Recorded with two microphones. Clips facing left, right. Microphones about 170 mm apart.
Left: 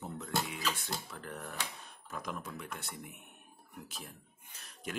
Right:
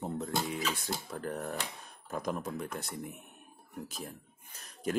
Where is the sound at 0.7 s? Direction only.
40° right (ahead or behind).